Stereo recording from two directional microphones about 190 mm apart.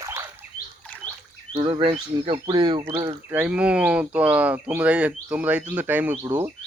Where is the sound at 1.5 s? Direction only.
30° right (ahead or behind).